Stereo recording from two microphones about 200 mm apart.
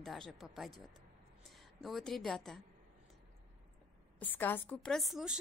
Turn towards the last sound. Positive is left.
turn(degrees=0)  # may be behind; listen again after turning